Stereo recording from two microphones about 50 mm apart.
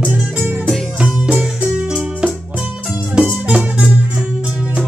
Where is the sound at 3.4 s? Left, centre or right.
Centre.